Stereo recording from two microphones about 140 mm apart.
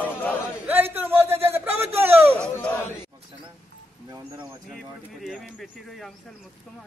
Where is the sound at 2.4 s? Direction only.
10° left (ahead or behind).